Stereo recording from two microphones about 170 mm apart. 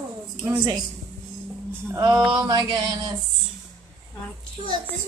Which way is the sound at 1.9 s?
25° right (ahead or behind).